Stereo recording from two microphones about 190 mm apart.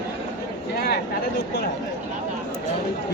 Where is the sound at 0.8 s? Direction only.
55° left (ahead or behind).